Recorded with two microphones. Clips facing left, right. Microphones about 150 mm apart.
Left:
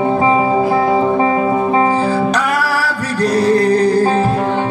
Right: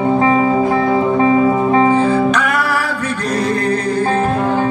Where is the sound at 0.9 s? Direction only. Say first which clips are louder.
Right 1 dB; 30° left (ahead or behind).